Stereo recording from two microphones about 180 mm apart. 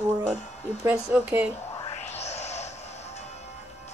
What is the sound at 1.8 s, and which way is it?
Music, 35° left (ahead or behind).